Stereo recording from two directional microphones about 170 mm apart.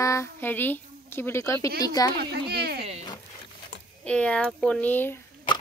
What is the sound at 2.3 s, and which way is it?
Speech, 75° right (ahead or behind).